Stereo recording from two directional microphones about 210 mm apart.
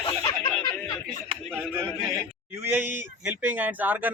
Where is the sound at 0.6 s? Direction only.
20° left (ahead or behind).